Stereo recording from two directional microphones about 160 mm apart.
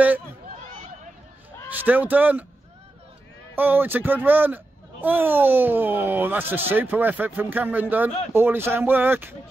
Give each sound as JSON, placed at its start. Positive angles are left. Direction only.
{"t": 1.7, "sound": "a man's voice", "side_deg": -10}
{"t": 3.5, "sound": "speech", "side_deg": -10}